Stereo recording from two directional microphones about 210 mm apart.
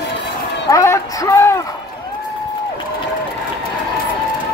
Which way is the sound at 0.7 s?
15° left (ahead or behind).